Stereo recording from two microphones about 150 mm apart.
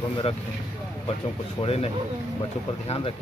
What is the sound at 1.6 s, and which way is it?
Speech, 40° left (ahead or behind).